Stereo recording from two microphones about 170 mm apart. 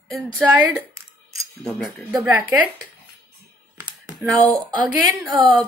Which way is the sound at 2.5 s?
15° right (ahead or behind).